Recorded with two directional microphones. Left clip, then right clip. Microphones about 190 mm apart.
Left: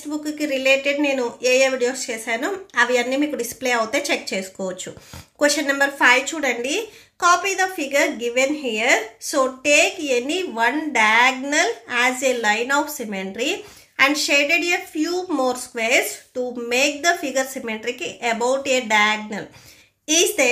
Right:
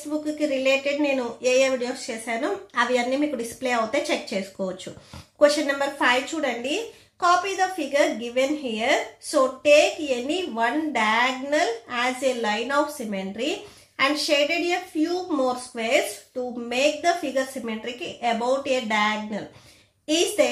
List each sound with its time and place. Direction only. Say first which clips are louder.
0.2 s a woman's voice: left 2 dB; 25° left (ahead or behind)